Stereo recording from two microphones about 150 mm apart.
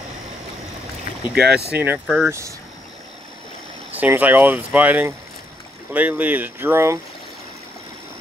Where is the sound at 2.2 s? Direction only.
20° right (ahead or behind).